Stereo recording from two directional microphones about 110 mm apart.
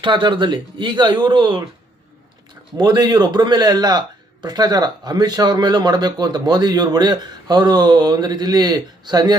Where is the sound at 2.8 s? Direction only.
40° right (ahead or behind).